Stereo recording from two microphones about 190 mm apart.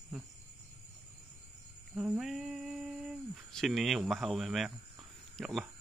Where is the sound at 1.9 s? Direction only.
5° right (ahead or behind).